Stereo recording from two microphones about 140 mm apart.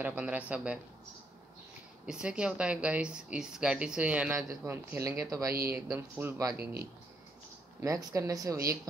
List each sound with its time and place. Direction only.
0.0 s speech: 10° right (ahead or behind)
2.0 s speech: 5° right (ahead or behind)
4.5 s speech: 20° right (ahead or behind)
7.8 s speech: 25° right (ahead or behind)